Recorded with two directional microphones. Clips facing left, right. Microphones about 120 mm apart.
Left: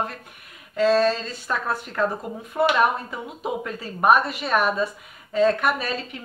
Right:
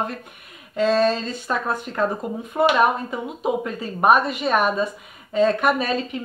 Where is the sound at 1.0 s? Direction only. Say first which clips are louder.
Right 2 dB; 20° right (ahead or behind).